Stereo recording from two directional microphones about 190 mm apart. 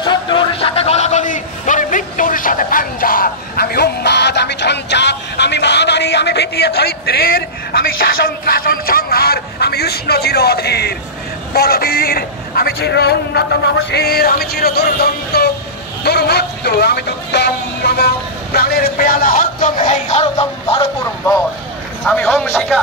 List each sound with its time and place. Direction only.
0.0 s a sound: 25° left (ahead or behind); by 7.8 s 55° left (ahead or behind)
8.3 s speech: 50° left (ahead or behind); by 20.9 s 30° left (ahead or behind)
22.0 s a man's voice: 5° left (ahead or behind)